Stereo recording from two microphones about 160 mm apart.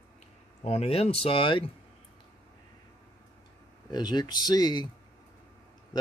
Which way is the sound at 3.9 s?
25° left (ahead or behind).